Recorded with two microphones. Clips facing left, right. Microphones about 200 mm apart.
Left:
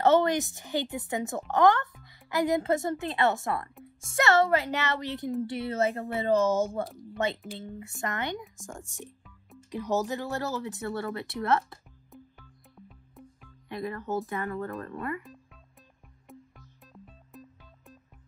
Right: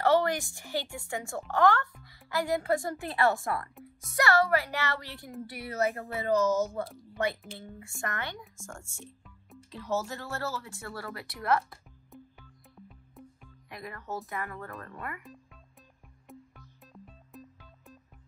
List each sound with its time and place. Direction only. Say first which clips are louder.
0.0 s speech: left 3 dB; 20° left (ahead or behind)
12.7 s music: even; centre (ahead or behind)
13.7 s speech: left 7 dB; 25° left (ahead or behind)
16.3 s music: even; centre (ahead or behind)